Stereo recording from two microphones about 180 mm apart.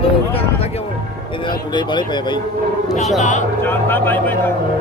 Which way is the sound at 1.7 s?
25° left (ahead or behind).